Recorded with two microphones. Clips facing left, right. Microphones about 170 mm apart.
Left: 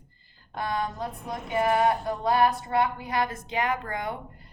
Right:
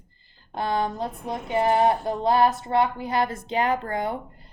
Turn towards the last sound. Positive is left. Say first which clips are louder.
# right 4 dB
turn(degrees=-30)  # may be behind; listen again after turning